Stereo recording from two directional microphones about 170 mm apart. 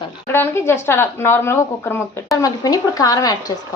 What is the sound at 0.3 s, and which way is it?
Speech, 15° left (ahead or behind).